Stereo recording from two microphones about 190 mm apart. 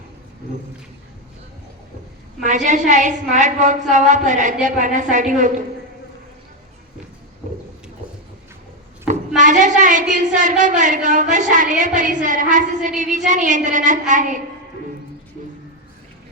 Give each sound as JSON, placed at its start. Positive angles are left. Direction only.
{"t": 2.4, "sound": "a woman's voice", "side_deg": -40}
{"t": 9.4, "sound": "a woman's voice", "side_deg": -40}